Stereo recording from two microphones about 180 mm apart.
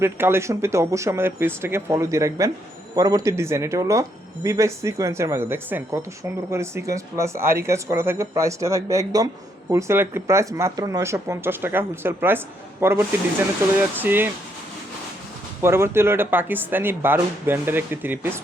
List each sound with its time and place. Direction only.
0.0 s speech: 15° right (ahead or behind)
15.6 s speech: 15° right (ahead or behind)